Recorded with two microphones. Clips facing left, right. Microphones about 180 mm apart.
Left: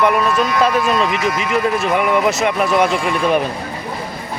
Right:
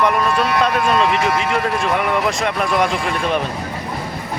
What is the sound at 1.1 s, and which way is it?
Speech, 35° right (ahead or behind).